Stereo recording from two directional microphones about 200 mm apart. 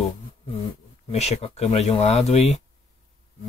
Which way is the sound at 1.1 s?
30° left (ahead or behind).